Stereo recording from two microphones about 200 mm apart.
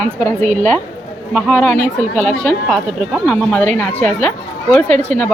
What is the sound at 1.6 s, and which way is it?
Speech, 35° right (ahead or behind).